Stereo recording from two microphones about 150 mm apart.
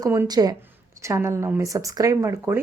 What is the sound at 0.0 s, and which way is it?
Speech, 20° right (ahead or behind).